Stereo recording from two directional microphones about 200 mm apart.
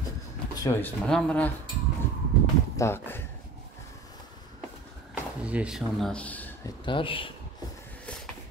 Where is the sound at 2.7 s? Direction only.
10° left (ahead or behind).